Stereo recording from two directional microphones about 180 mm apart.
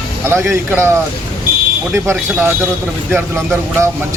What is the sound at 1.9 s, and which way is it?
Speech, 15° right (ahead or behind).